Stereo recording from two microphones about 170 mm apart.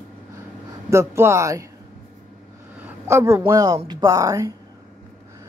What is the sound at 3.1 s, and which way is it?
Speech, 15° right (ahead or behind).